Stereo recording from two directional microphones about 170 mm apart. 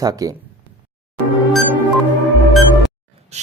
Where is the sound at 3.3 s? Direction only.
40° right (ahead or behind).